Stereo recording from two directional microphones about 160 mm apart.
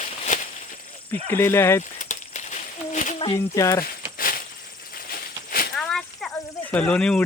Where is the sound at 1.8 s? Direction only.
50° left (ahead or behind).